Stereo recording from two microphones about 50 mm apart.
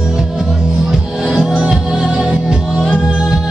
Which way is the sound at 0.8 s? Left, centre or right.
Centre.